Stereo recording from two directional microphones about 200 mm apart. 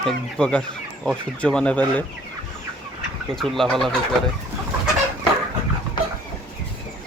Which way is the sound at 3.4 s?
Centre (ahead or behind).